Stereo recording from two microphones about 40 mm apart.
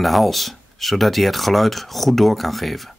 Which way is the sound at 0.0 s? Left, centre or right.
Centre.